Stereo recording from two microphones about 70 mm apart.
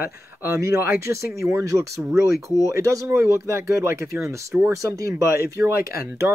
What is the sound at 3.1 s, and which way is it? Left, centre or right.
Speech, right.